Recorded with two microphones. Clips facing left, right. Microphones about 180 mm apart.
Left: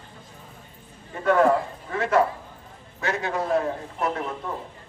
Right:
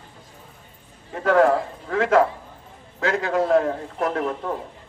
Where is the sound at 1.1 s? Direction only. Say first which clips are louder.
Right 2 dB; 90° right.